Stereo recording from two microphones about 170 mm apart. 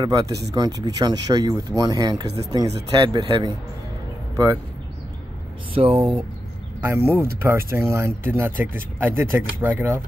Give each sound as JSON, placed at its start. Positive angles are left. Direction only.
{"t": 0.0, "sound": "speech", "side_deg": -20}
{"t": 5.8, "sound": "speech", "side_deg": -30}
{"t": 6.8, "sound": "speech", "side_deg": -15}